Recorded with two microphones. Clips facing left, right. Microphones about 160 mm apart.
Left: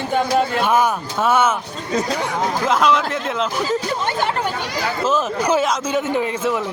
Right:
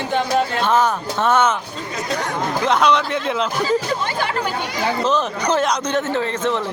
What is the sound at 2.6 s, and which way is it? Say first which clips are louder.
Speech: right 1 dB; 5° left (ahead or behind).